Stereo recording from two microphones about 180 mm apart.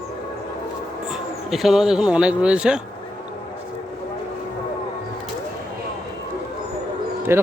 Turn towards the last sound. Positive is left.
turn(degrees=-15)  # may be behind; listen again after turning